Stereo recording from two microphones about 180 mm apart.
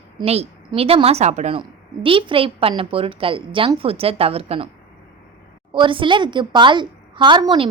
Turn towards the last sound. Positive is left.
turn(degrees=-25)  # may be behind; listen again after turning